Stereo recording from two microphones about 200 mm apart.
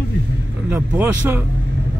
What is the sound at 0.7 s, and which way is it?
Speech, 10° right (ahead or behind).